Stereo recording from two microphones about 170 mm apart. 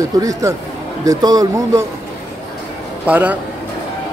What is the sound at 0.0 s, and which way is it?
A man's voice, 20° right (ahead or behind).